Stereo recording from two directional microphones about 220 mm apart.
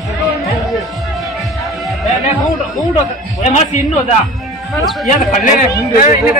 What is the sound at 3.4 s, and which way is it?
Speech, 35° left (ahead or behind).